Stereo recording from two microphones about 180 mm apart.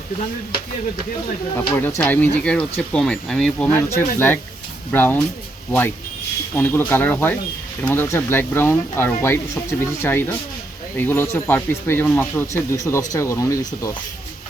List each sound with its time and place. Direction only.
1.5 s speech: 15° left (ahead or behind)
6.6 s speech: 10° left (ahead or behind)